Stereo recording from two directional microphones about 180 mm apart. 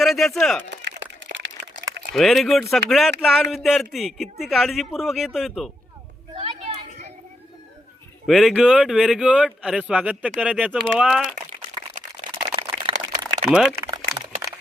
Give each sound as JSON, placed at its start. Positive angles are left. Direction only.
{"t": 0.0, "sound": "speech", "side_deg": 0}
{"t": 0.7, "sound": "crack", "side_deg": -75}
{"t": 2.1, "sound": "speech", "side_deg": 0}
{"t": 6.3, "sound": "a sound", "side_deg": -35}
{"t": 8.3, "sound": "speech", "side_deg": 0}
{"t": 12.4, "sound": "a sound", "side_deg": -25}
{"t": 13.4, "sound": "speech", "side_deg": -5}